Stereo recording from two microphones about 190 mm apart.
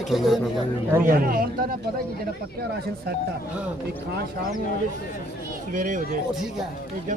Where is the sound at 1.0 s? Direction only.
50° right (ahead or behind).